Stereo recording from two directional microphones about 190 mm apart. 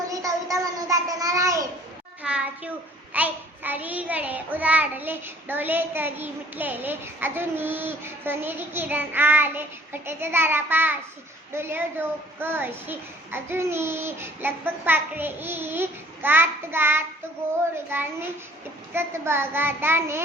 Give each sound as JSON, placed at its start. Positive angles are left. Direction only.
{"t": 0.1, "sound": "child singing", "side_deg": -15}
{"t": 2.2, "sound": "a sound", "side_deg": -5}
{"t": 3.1, "sound": "child singing", "side_deg": -10}